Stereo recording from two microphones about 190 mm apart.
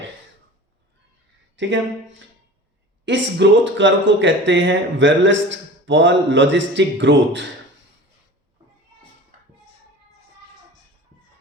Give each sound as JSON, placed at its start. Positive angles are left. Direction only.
{"t": 1.5, "sound": "speech", "side_deg": -70}